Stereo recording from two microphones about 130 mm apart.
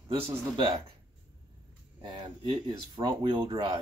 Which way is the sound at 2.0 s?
40° right (ahead or behind).